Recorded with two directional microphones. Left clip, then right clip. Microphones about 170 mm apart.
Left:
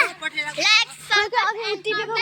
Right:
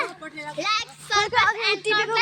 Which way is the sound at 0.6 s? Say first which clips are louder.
Left 7 dB; 45° right (ahead or behind).